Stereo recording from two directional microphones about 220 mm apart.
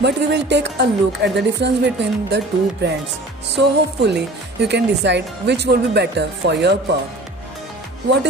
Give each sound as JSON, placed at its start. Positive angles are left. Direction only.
{"t": 0.0, "sound": "speech", "side_deg": -50}